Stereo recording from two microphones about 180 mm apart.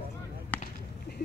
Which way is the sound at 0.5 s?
10° left (ahead or behind).